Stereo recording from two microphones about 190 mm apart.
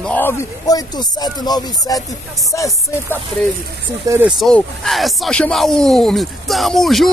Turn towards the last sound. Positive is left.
turn(degrees=0)  # may be behind; listen again after turning